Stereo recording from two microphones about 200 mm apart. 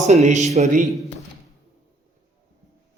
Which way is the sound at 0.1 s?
35° right (ahead or behind).